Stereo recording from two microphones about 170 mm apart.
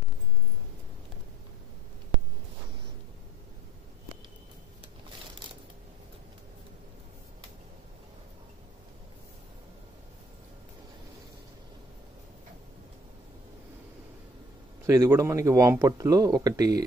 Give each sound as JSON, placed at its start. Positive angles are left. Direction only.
{"t": 14.9, "sound": "speech", "side_deg": -15}